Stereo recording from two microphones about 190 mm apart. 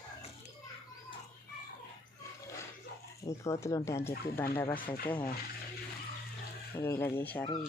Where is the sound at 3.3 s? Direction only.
15° left (ahead or behind).